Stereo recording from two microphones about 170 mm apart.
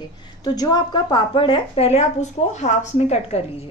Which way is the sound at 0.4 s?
25° left (ahead or behind).